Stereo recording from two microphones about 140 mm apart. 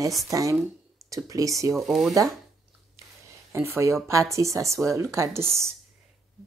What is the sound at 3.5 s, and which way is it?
Speech, 20° right (ahead or behind).